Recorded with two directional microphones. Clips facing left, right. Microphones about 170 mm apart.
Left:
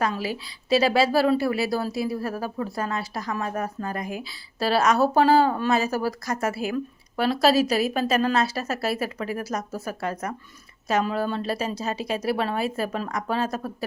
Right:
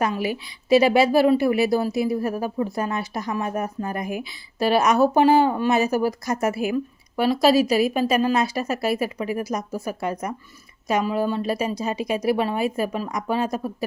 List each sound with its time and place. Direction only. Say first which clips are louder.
0.0 s a woman's voice: right 3 dB; 20° right (ahead or behind)